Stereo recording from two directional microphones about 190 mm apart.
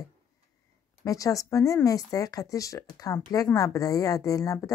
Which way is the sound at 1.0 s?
15° left (ahead or behind).